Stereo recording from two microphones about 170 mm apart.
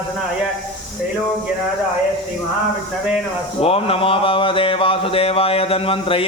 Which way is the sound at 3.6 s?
35° left (ahead or behind).